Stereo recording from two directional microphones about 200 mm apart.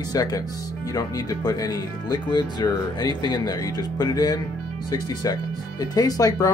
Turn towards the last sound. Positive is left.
turn(degrees=20)  # may be behind; listen again after turning